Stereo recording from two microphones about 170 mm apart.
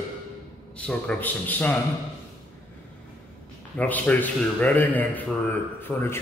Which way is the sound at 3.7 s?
10° left (ahead or behind).